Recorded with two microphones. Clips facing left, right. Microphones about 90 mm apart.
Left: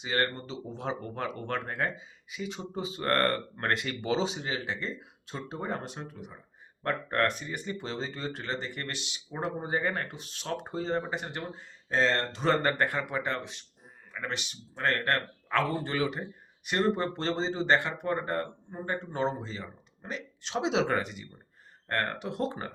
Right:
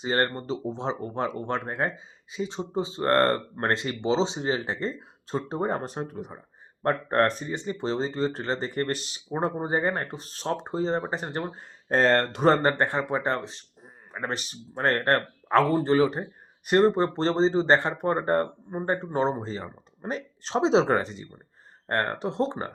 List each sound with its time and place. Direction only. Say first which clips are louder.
0.0 s speech: right 4 dB; 35° right (ahead or behind); by 12.5 s 55° right (ahead or behind)
12.5 s speech: right 5 dB; 30° right (ahead or behind)